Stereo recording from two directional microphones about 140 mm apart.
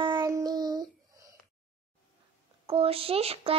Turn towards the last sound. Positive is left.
turn(degrees=-45)  # may be behind; listen again after turning